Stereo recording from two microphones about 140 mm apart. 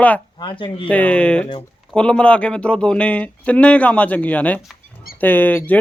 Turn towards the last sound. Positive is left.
turn(degrees=15)  # may be behind; listen again after turning